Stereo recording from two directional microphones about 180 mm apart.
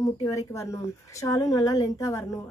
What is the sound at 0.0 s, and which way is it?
A woman's voice, 15° left (ahead or behind).